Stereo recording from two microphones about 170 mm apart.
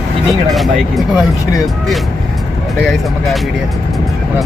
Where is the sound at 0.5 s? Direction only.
Centre (ahead or behind).